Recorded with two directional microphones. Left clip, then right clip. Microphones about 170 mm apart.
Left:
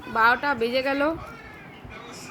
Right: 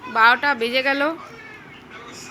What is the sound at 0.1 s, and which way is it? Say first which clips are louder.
Speech: right 5 dB; centre (ahead or behind).